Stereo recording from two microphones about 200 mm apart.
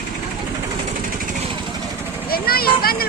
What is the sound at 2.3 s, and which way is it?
Speech, 50° left (ahead or behind).